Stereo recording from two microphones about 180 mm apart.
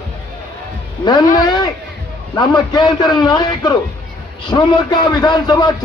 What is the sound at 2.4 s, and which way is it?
A man's voice, 25° left (ahead or behind).